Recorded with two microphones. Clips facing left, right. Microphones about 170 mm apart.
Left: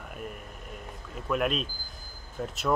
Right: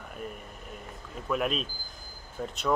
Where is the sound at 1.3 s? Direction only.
Centre (ahead or behind).